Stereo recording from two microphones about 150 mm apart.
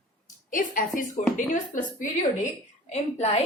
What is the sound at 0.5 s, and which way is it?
Speech, 65° left (ahead or behind).